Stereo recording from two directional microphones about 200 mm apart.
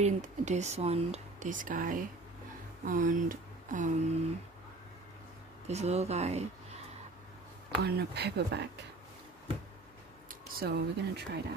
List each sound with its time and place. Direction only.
0.0 s speech: 35° right (ahead or behind)
5.7 s speech: 35° right (ahead or behind)
7.8 s speech: 55° right (ahead or behind)
10.5 s speech: 50° right (ahead or behind)